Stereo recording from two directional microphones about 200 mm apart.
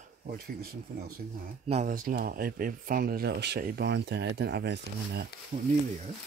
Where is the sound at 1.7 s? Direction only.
40° right (ahead or behind).